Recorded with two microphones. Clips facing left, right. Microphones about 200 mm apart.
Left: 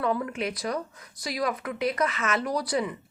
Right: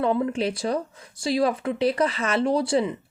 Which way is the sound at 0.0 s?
30° right (ahead or behind).